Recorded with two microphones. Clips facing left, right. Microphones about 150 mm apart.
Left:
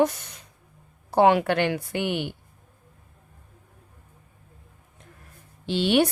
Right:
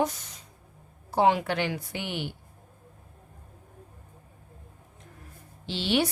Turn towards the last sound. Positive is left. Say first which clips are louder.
# left 6 dB
turn(degrees=55)  # may be behind; listen again after turning